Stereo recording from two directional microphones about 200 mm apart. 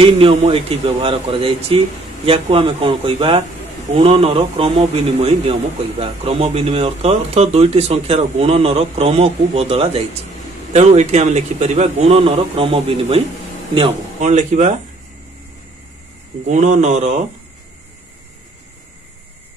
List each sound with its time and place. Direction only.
0.0 s a man's voice: 25° right (ahead or behind)
16.4 s a man's voice: 35° right (ahead or behind)